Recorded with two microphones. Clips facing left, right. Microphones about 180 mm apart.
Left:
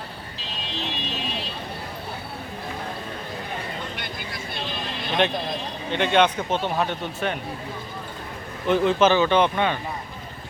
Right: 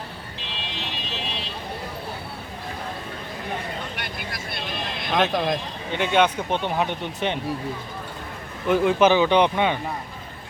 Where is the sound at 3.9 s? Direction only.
65° right (ahead or behind).